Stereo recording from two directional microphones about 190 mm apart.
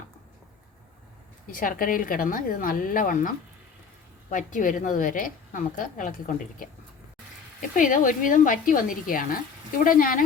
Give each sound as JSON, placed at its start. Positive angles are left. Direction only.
{"t": 1.5, "sound": "speech", "side_deg": 45}
{"t": 7.8, "sound": "speech", "side_deg": 45}